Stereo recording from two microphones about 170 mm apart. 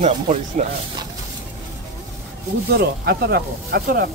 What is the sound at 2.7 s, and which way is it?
Speech, 70° right (ahead or behind).